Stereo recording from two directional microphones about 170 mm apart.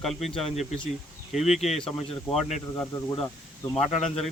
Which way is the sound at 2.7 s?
15° left (ahead or behind).